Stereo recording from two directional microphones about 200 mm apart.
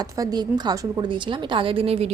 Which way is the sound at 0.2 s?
20° right (ahead or behind).